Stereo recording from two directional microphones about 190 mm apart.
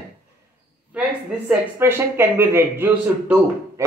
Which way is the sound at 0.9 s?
10° right (ahead or behind).